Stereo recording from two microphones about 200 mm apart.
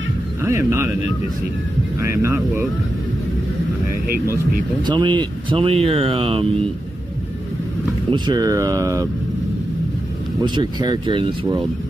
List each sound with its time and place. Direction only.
0.4 s speech: 10° right (ahead or behind)
2.0 s speech: 15° right (ahead or behind)
4.8 s speech: 25° right (ahead or behind)
8.1 s speech: 20° right (ahead or behind)
10.4 s speech: 20° right (ahead or behind)